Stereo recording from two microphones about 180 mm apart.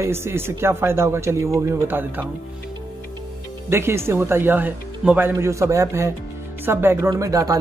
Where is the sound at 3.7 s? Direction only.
15° right (ahead or behind).